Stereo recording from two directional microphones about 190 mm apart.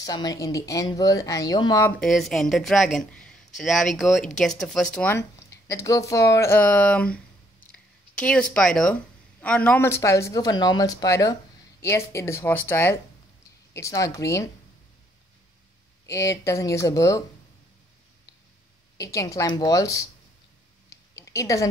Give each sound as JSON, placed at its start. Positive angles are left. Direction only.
{"t": 0.0, "sound": "speech", "side_deg": 20}
{"t": 2.0, "sound": "speech", "side_deg": 0}
{"t": 4.9, "sound": "a woman's voice", "side_deg": 10}
{"t": 16.1, "sound": "a woman's voice", "side_deg": 15}
{"t": 18.9, "sound": "a woman's voice", "side_deg": 15}
{"t": 20.9, "sound": "a sound", "side_deg": 15}